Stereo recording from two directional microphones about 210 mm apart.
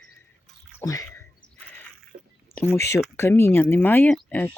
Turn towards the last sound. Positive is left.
turn(degrees=10)  # may be behind; listen again after turning